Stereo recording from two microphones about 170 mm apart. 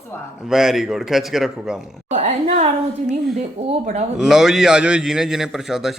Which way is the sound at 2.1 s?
45° right (ahead or behind).